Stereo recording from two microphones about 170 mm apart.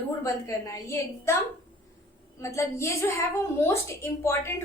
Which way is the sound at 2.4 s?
15° left (ahead or behind).